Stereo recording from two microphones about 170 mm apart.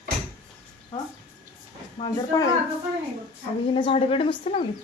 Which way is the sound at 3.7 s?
30° left (ahead or behind).